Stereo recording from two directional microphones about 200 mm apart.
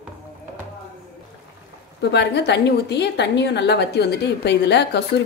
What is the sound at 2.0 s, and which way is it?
A woman's voice, 55° left (ahead or behind).